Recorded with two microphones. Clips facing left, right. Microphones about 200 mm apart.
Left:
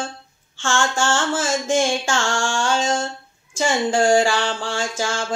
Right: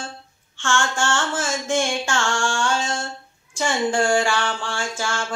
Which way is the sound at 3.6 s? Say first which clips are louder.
Left 2 dB; 40° left (ahead or behind).